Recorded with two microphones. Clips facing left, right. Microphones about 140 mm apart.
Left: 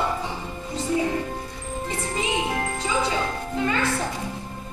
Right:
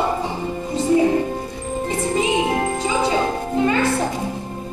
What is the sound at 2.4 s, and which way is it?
Music, 25° right (ahead or behind).